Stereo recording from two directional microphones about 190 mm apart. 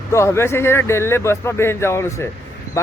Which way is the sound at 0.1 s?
15° left (ahead or behind).